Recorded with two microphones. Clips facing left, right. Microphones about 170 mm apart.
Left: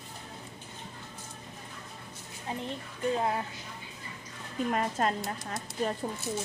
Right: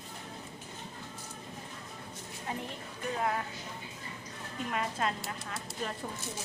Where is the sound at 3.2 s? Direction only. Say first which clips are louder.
Left 2 dB; 25° left (ahead or behind).